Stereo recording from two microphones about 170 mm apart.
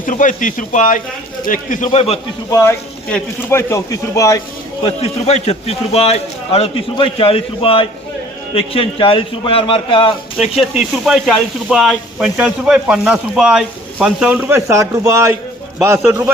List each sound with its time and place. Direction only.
0.0 s speech: 50° left (ahead or behind)
2.5 s speech: 20° left (ahead or behind)
4.8 s a man's voice: 35° left (ahead or behind)
10.3 s a man's voice: 5° right (ahead or behind)